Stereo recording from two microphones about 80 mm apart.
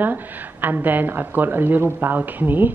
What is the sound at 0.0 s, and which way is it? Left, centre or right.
Speech, right.